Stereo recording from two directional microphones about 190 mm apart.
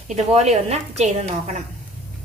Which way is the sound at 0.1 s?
35° right (ahead or behind).